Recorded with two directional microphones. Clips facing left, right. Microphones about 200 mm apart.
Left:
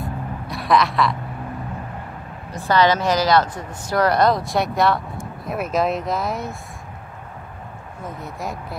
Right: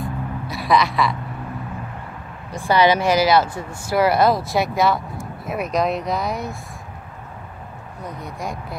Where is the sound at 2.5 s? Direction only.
10° right (ahead or behind).